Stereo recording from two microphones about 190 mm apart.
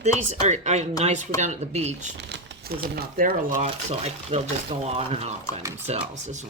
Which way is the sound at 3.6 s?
30° right (ahead or behind).